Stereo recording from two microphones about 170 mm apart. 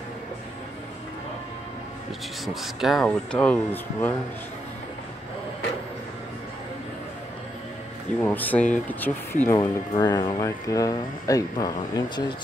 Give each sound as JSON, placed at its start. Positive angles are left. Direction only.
{"t": 2.4, "sound": "speech", "side_deg": 0}
{"t": 8.2, "sound": "speech", "side_deg": 10}